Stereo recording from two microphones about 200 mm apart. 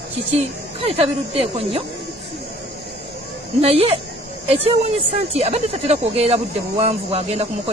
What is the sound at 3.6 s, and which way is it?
Speech, 30° right (ahead or behind).